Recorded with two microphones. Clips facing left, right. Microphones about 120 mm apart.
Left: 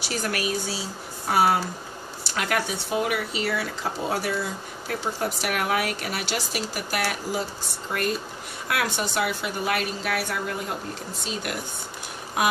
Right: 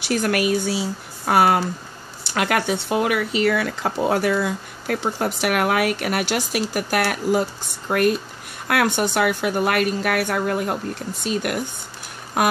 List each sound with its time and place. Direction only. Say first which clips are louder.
0.0 s speech: right 7 dB; 60° right (ahead or behind)